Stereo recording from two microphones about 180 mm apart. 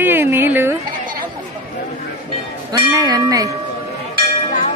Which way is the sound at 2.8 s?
20° right (ahead or behind).